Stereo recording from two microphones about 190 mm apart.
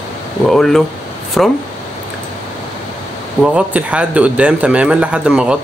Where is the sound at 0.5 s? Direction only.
Centre (ahead or behind).